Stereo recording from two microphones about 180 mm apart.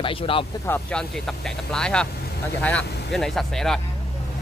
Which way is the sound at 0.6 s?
10° left (ahead or behind).